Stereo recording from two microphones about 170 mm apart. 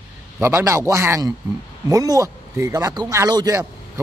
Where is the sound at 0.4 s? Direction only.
15° right (ahead or behind).